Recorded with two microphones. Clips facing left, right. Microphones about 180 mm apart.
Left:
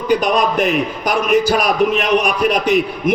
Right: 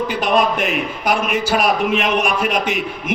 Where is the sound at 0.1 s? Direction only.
40° left (ahead or behind).